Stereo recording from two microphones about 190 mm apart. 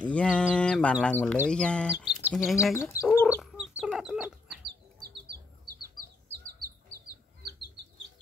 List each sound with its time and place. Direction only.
0.0 s speech: 5° left (ahead or behind)
2.5 s chicken: 15° left (ahead or behind); by 4.6 s 5° right (ahead or behind)
5.1 s bird: 60° right (ahead or behind)